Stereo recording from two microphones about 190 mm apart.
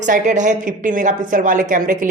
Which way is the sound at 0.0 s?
40° right (ahead or behind).